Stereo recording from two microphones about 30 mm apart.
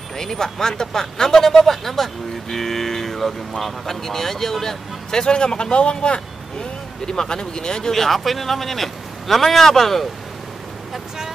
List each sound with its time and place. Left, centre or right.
0.2 s speech: centre
5.2 s speech: left
7.9 s speech: centre